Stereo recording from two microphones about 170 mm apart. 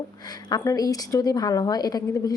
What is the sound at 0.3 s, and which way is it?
A woman's voice, 25° left (ahead or behind).